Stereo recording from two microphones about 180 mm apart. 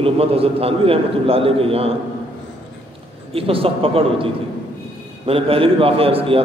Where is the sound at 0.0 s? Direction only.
30° right (ahead or behind).